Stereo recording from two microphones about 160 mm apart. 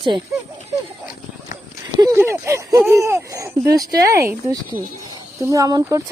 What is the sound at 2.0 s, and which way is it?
Speech, 20° right (ahead or behind).